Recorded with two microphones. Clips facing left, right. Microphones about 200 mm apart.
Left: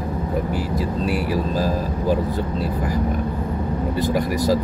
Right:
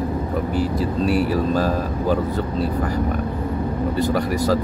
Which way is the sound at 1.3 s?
50° right (ahead or behind).